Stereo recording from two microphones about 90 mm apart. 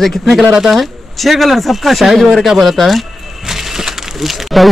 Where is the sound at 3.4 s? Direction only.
5° right (ahead or behind).